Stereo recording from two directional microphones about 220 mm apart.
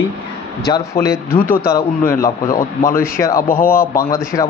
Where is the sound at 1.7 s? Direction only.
15° left (ahead or behind).